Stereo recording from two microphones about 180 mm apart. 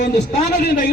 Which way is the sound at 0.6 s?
55° left (ahead or behind).